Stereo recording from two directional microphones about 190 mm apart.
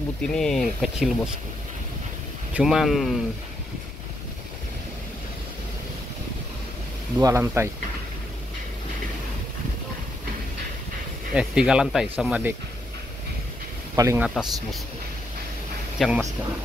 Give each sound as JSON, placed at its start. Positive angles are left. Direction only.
{"t": 0.2, "sound": "speech", "side_deg": 5}
{"t": 2.5, "sound": "speech", "side_deg": 0}
{"t": 7.2, "sound": "speech", "side_deg": -15}
{"t": 11.3, "sound": "speech", "side_deg": -5}
{"t": 13.9, "sound": "speech", "side_deg": -15}
{"t": 14.3, "sound": "speech", "side_deg": 0}
{"t": 16.0, "sound": "speech", "side_deg": 0}